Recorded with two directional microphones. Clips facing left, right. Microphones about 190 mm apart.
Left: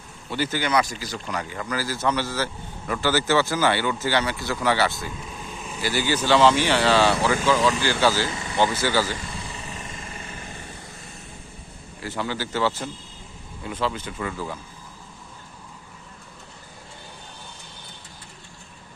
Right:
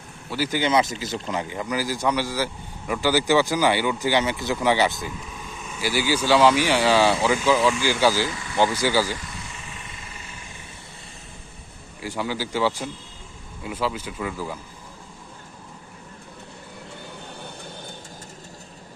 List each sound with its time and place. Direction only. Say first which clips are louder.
0.3 s speech: even; 5° right (ahead or behind)
0.5 s speech: right 3 dB; 20° right (ahead or behind)
9.4 s vehicle: left 4 dB; 35° left (ahead or behind)
12.0 s speech: right 1 dB; 10° right (ahead or behind)